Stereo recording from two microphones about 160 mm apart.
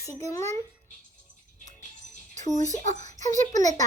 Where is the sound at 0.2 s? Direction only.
20° left (ahead or behind).